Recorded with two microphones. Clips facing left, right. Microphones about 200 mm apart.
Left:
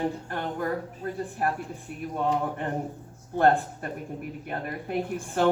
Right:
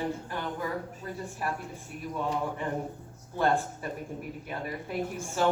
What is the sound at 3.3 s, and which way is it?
A woman's voice, 55° left (ahead or behind).